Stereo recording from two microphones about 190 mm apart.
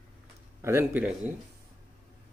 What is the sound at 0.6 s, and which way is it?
Speech, 10° right (ahead or behind).